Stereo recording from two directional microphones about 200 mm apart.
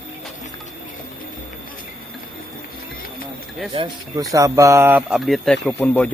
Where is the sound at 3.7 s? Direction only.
20° right (ahead or behind).